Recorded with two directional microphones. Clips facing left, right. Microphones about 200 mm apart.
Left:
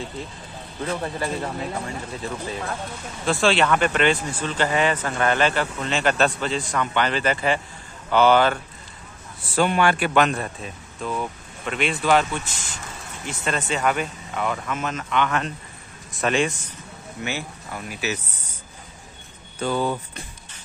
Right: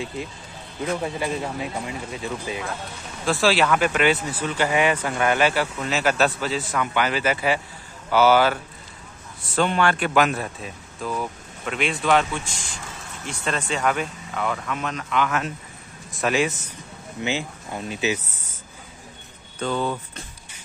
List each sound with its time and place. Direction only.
0.8 s speech: 5° right (ahead or behind)
9.6 s speech: 10° left (ahead or behind); by 16.5 s 5° right (ahead or behind)
17.2 s speech: 15° right (ahead or behind)
19.6 s speech: 10° left (ahead or behind)